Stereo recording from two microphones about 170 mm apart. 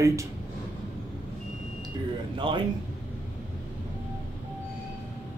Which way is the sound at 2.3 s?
30° right (ahead or behind).